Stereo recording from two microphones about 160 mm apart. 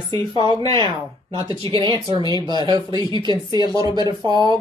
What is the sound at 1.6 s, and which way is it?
Speech, 30° right (ahead or behind).